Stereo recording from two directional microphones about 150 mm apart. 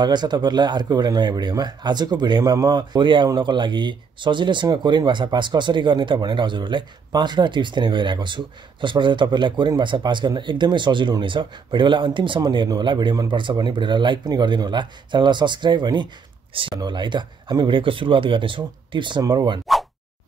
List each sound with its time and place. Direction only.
0.0 s speech: 30° right (ahead or behind)